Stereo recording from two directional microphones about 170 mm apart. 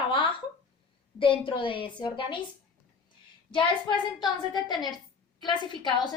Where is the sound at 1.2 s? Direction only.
30° left (ahead or behind).